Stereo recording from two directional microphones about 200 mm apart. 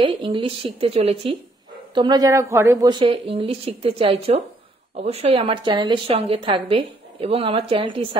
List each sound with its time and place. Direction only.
0.0 s a woman's voice: 25° right (ahead or behind)